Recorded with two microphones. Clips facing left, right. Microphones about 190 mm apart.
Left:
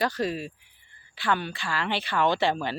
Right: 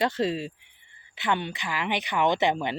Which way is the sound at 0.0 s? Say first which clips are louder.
Right 2 dB; 25° right (ahead or behind).